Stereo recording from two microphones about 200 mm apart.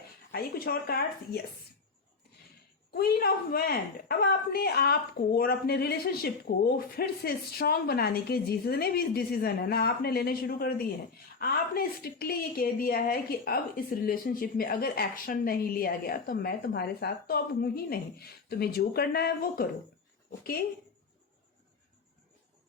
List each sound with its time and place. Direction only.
0.3 s a woman's voice: 55° left (ahead or behind)
2.9 s a woman's voice: 50° left (ahead or behind)